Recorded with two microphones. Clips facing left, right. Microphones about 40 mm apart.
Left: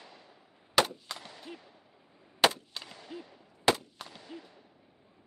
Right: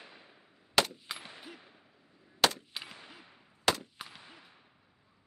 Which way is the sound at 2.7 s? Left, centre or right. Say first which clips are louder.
Left 2 dB; centre.